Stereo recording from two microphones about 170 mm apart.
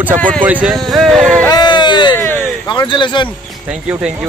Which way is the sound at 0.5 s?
5° right (ahead or behind).